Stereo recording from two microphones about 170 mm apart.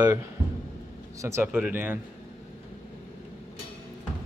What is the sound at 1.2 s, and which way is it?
Speech, 15° right (ahead or behind).